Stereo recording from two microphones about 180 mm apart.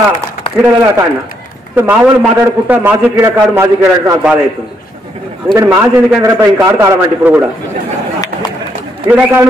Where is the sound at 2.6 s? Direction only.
10° right (ahead or behind).